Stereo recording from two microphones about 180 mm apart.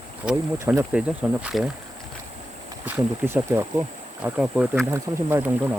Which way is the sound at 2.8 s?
10° right (ahead or behind).